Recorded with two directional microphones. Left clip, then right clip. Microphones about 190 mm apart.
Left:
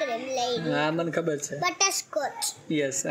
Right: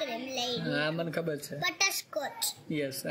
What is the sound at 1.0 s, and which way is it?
Speech, 5° right (ahead or behind).